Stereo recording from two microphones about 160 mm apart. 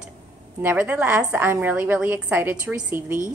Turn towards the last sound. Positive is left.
turn(degrees=-15)  # may be behind; listen again after turning